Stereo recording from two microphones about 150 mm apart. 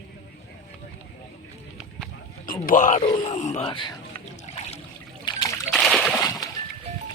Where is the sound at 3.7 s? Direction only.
30° left (ahead or behind).